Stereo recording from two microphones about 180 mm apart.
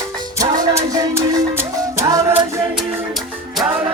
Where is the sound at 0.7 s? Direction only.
15° right (ahead or behind).